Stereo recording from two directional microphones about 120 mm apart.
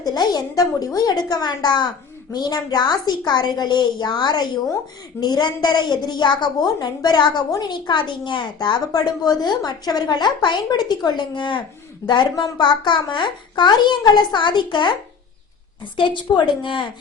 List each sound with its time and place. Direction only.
0.0 s a woman's voice: 35° left (ahead or behind)
16.0 s a woman's voice: 40° left (ahead or behind)